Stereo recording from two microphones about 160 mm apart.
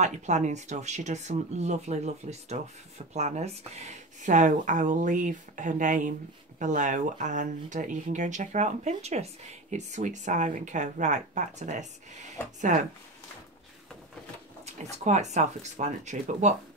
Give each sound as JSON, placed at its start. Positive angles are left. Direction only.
{"t": 0.0, "sound": "speech", "side_deg": -45}
{"t": 14.6, "sound": "speech", "side_deg": -45}